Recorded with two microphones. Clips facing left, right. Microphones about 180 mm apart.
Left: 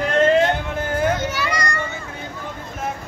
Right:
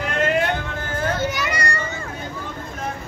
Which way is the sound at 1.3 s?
20° right (ahead or behind).